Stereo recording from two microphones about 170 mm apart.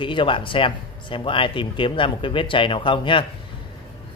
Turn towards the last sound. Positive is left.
turn(degrees=30)  # may be behind; listen again after turning